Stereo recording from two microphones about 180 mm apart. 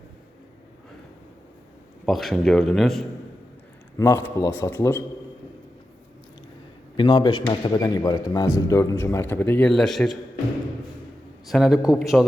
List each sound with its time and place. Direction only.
2.0 s a man's voice: centre (ahead or behind)
3.9 s a man's voice: 15° left (ahead or behind)
6.9 s a man's voice: 25° left (ahead or behind); by 10.2 s centre (ahead or behind)
11.4 s a man's voice: centre (ahead or behind)